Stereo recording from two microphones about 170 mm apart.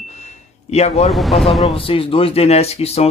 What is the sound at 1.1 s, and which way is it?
Speech, centre (ahead or behind).